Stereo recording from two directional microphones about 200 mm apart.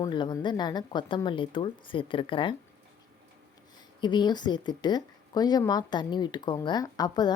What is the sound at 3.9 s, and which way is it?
A woman's voice, 20° left (ahead or behind).